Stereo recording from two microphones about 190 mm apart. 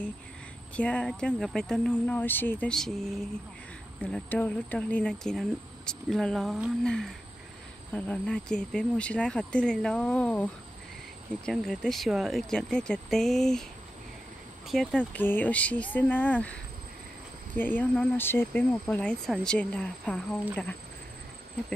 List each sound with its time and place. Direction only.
0.7 s speech: 5° left (ahead or behind)
14.7 s speech: 5° left (ahead or behind)
17.6 s speech: 10° left (ahead or behind)